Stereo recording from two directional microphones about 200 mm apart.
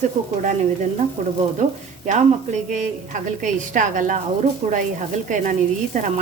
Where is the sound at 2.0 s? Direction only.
35° right (ahead or behind).